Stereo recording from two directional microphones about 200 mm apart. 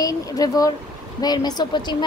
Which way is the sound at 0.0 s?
20° left (ahead or behind).